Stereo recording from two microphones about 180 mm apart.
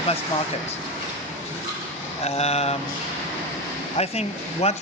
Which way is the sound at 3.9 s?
35° left (ahead or behind).